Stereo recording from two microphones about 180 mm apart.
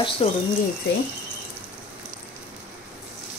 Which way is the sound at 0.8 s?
70° left (ahead or behind).